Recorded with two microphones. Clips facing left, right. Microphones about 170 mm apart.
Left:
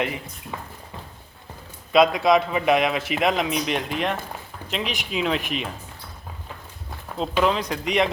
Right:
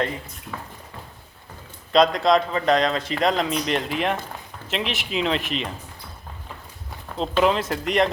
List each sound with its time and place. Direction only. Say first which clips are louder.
0.5 s a sound: even; 15° left (ahead or behind)
1.9 s speech: even; 5° left (ahead or behind)
7.2 s speech: right 1 dB; centre (ahead or behind)